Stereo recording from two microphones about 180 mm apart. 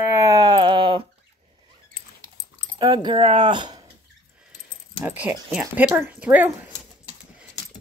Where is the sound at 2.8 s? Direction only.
25° right (ahead or behind).